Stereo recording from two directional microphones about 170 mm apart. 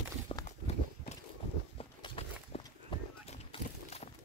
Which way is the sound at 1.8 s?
35° left (ahead or behind).